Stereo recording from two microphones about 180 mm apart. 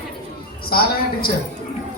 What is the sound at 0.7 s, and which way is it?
Speech, 55° left (ahead or behind).